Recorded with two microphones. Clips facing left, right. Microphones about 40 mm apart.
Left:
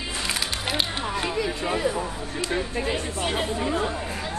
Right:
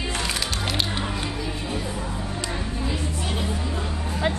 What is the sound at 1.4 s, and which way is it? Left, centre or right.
Music, left.